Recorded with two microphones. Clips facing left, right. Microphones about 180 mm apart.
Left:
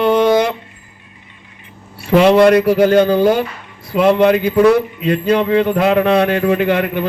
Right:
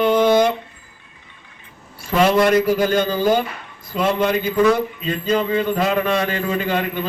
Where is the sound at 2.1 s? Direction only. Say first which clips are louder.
Left 6 dB; 65° left (ahead or behind).